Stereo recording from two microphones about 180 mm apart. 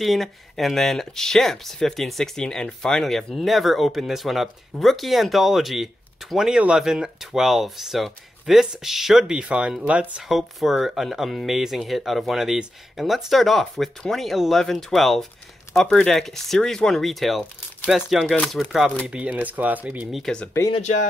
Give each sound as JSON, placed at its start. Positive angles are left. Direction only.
{"t": 0.0, "sound": "speech", "side_deg": 0}
{"t": 20.7, "sound": "speech", "side_deg": 40}